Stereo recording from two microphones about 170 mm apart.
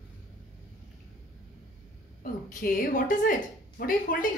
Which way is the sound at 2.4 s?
55° left (ahead or behind).